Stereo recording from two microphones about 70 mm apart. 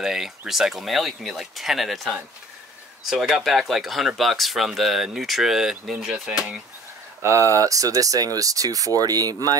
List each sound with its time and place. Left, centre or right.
0.0 s speech: centre
7.2 s speech: right